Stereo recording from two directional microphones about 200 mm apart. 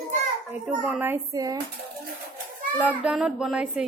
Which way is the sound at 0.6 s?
5° right (ahead or behind).